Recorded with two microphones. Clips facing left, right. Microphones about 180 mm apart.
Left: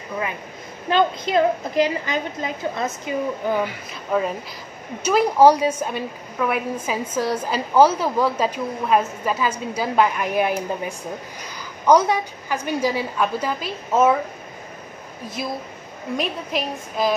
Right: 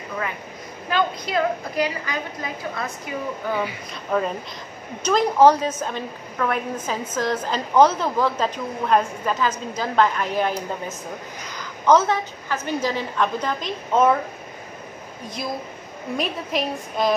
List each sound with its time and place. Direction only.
0.8 s a woman's voice: 25° left (ahead or behind)
4.1 s a woman's voice: 5° left (ahead or behind)
16.2 s a woman's voice: centre (ahead or behind)